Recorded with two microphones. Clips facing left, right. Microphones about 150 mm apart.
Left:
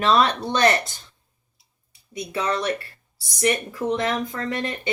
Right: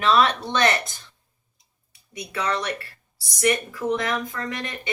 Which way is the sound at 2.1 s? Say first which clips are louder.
Left 2 dB; 25° left (ahead or behind).